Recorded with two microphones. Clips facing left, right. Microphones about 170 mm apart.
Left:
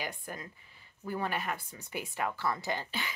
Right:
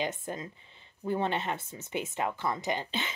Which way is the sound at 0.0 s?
20° right (ahead or behind).